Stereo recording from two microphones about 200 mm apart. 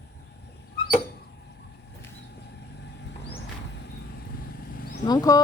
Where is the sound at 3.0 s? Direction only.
60° left (ahead or behind).